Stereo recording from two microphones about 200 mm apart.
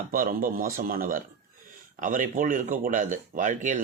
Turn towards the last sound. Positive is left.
turn(degrees=-40)  # may be behind; listen again after turning